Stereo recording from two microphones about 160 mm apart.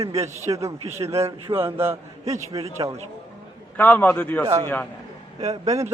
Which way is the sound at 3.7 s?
10° left (ahead or behind).